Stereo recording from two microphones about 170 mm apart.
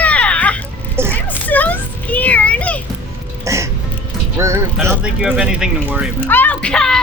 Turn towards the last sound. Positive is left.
turn(degrees=5)  # may be behind; listen again after turning